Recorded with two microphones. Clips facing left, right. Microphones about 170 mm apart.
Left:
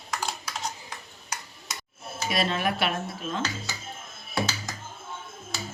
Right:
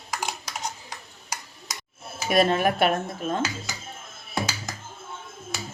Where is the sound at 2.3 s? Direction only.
50° right (ahead or behind).